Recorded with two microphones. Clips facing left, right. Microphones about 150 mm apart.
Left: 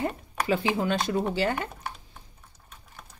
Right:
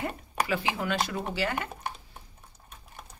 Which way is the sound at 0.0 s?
25° left (ahead or behind).